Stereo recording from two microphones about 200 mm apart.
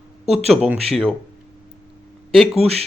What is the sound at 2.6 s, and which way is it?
Speech, 30° right (ahead or behind).